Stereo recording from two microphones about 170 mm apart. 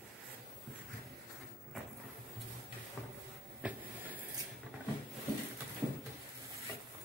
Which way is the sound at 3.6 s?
5° right (ahead or behind).